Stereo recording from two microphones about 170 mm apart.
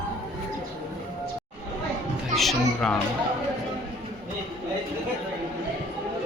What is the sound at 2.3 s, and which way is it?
Speech, centre (ahead or behind).